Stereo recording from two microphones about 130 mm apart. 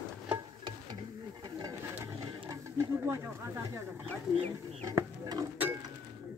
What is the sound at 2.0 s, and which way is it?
Wild animals, 25° right (ahead or behind).